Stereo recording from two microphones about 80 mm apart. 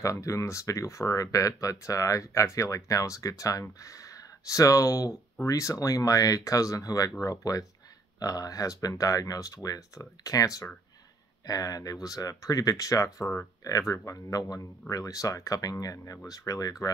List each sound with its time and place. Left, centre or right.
0.0 s speech: left